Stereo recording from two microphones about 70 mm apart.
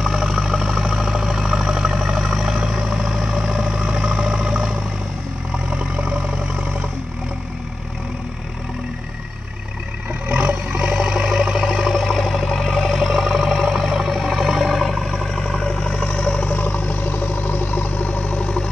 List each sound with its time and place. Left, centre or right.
0.0 s vehicle: centre
10.2 s vehicle: right; by 18.7 s centre